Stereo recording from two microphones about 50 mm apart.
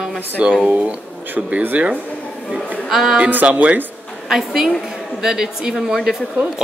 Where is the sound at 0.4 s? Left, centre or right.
Right.